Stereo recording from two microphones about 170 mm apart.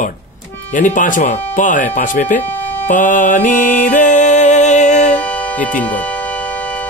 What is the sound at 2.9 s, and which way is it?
Music, 50° left (ahead or behind).